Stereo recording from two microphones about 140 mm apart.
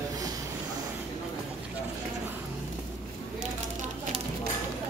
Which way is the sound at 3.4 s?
60° right (ahead or behind).